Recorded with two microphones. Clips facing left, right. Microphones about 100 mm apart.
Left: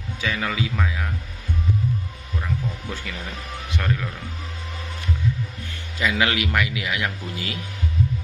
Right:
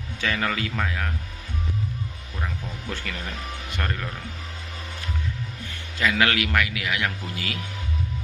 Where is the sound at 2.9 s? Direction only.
10° left (ahead or behind).